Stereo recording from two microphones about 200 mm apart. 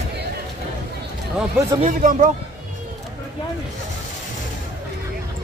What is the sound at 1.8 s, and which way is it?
Speech, 40° right (ahead or behind).